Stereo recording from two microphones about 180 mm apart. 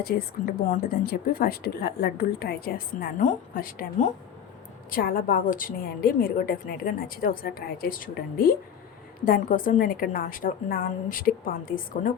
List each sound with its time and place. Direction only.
0.0 s a woman's voice: 50° left (ahead or behind)